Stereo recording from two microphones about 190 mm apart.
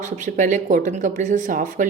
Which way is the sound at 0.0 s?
40° right (ahead or behind).